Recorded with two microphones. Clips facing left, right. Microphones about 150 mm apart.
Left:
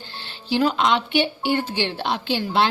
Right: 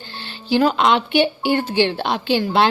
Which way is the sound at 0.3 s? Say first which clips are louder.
Right 4 dB; 60° right (ahead or behind).